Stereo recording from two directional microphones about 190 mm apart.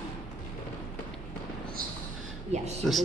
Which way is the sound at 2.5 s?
35° right (ahead or behind).